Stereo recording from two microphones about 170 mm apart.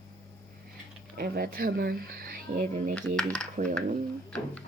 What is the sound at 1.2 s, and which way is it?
Speech, 65° right (ahead or behind).